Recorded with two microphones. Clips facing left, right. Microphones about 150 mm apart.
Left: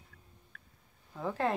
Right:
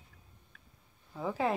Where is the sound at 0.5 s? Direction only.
50° left (ahead or behind).